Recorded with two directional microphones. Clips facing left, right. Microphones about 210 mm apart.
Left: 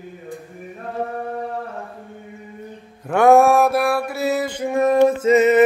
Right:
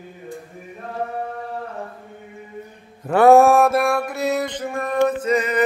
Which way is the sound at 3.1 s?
Centre (ahead or behind).